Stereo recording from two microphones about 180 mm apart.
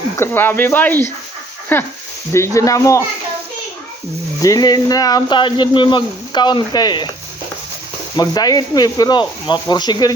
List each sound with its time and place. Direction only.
0.2 s speech: 10° left (ahead or behind)
4.4 s speech: 20° left (ahead or behind)
8.1 s speech: 20° left (ahead or behind)